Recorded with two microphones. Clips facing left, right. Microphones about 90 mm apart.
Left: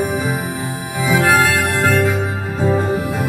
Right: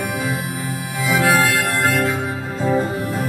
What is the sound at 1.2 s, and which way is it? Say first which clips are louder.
Music: left 2 dB; 35° left (ahead or behind).